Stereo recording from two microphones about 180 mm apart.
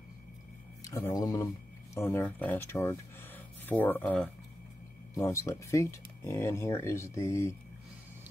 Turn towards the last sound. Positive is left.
turn(degrees=15)  # may be behind; listen again after turning